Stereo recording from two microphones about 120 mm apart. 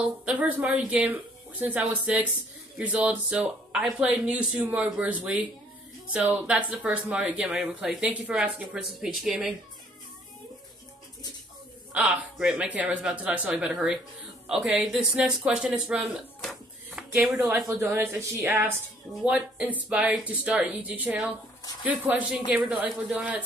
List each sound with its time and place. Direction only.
0.0 s speech: 10° right (ahead or behind)
11.9 s speech: 10° right (ahead or behind)
16.4 s a sound: 5° right (ahead or behind)
17.6 s a man's voice: 20° right (ahead or behind)
19.2 s speech: 10° right (ahead or behind)